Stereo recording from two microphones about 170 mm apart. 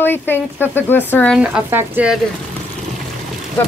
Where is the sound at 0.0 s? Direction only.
10° left (ahead or behind).